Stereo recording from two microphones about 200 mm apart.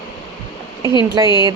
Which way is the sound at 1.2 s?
20° right (ahead or behind).